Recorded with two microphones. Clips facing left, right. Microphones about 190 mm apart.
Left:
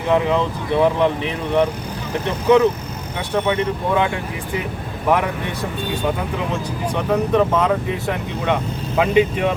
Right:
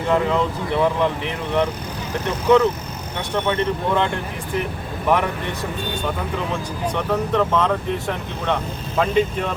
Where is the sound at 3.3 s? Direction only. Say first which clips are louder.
Left 2 dB; 10° left (ahead or behind).